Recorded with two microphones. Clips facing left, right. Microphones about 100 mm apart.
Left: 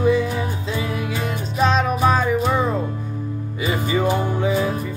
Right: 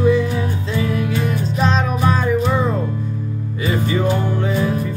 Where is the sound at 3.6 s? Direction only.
15° left (ahead or behind).